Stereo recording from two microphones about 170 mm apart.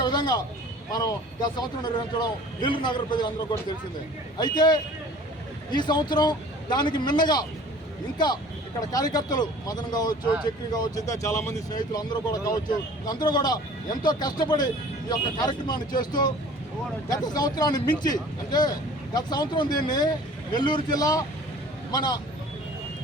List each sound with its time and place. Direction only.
0.0 s a sound: 25° left (ahead or behind)
0.9 s speech: 20° left (ahead or behind)
4.4 s speech: 25° left (ahead or behind)
8.9 s speech: 20° left (ahead or behind)